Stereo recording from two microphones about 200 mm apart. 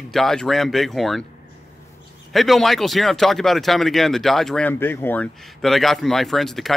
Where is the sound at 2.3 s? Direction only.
Centre (ahead or behind).